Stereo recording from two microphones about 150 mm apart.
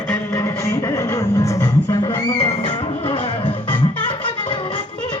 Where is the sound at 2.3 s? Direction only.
35° left (ahead or behind).